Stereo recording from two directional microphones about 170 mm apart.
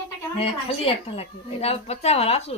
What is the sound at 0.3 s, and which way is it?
Speech, 35° left (ahead or behind).